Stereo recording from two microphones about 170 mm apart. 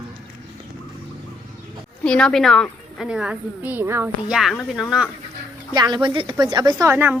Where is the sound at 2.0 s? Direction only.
5° left (ahead or behind); by 4.1 s 15° right (ahead or behind).